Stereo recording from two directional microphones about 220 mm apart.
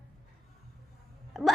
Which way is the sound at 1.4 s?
Centre (ahead or behind).